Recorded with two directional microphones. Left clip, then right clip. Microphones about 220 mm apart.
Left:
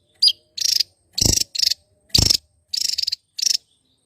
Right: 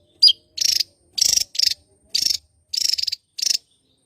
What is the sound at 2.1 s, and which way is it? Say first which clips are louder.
Cricket: left 4 dB; 25° left (ahead or behind).